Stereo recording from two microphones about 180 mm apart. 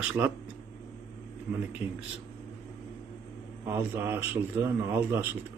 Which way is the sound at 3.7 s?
15° right (ahead or behind).